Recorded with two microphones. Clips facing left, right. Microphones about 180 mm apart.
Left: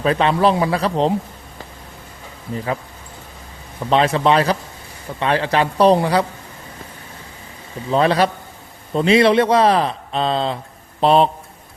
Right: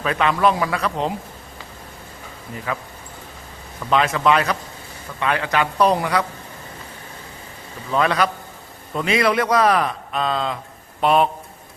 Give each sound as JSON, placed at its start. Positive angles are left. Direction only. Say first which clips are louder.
{"t": 0.0, "sound": "speech", "louder": "left 3 dB", "side_deg": 30}
{"t": 3.8, "sound": "speech", "louder": "left 2 dB", "side_deg": 30}
{"t": 7.9, "sound": "a man's voice", "louder": "left 4 dB", "side_deg": 30}